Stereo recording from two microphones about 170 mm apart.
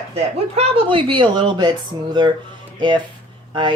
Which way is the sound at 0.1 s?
35° right (ahead or behind).